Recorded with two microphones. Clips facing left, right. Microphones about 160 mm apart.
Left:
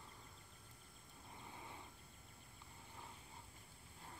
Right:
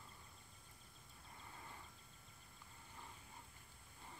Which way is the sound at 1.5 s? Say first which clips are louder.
Left 2 dB; 15° left (ahead or behind).